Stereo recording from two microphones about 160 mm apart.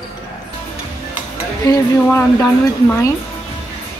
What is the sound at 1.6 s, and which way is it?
Speech, 20° left (ahead or behind).